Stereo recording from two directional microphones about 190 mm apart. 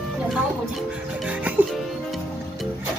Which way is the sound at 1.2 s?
5° right (ahead or behind).